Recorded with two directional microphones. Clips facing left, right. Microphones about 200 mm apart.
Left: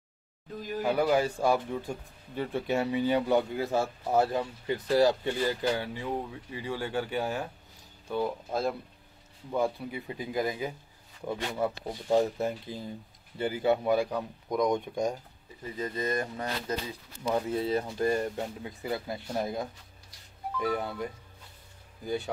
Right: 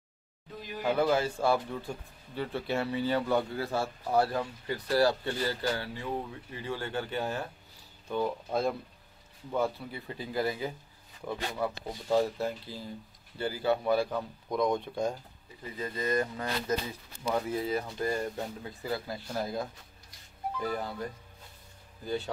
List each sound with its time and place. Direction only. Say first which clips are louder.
0.9 s speech: left 1 dB; 15° left (ahead or behind)
20.7 s speech: left 2 dB; 15° left (ahead or behind)